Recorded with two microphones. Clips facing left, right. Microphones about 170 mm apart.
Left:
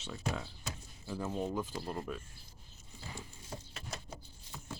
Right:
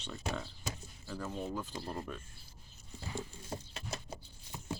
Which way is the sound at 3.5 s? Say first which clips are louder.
Right 3 dB; 30° right (ahead or behind).